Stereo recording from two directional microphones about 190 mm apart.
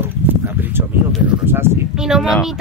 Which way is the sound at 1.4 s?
10° right (ahead or behind).